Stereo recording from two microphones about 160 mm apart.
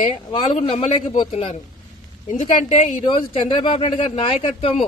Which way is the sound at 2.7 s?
30° left (ahead or behind).